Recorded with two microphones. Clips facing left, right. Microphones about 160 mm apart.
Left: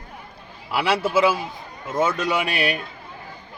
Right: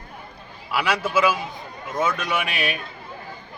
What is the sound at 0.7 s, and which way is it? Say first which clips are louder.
Speech: left 2 dB; 25° left (ahead or behind).